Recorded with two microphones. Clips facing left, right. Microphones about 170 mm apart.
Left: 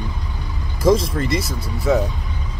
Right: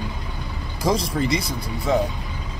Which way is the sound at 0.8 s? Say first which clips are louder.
Left 5 dB; centre (ahead or behind).